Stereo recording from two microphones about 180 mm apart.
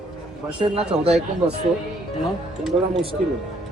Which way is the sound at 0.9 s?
5° right (ahead or behind).